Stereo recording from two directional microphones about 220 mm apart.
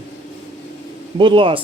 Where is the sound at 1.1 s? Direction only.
20° right (ahead or behind).